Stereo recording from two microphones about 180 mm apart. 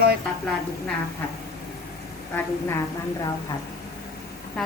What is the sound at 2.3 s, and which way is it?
Speech, 15° left (ahead or behind).